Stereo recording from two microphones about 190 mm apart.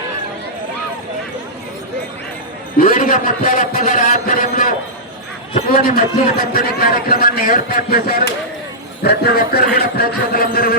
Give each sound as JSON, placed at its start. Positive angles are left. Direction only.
{"t": 2.7, "sound": "a man's voice", "side_deg": 45}
{"t": 5.7, "sound": "a man's voice", "side_deg": 50}